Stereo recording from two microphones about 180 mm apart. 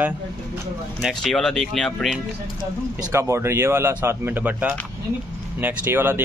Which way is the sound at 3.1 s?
15° right (ahead or behind).